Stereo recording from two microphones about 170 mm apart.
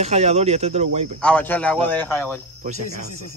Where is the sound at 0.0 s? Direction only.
40° right (ahead or behind).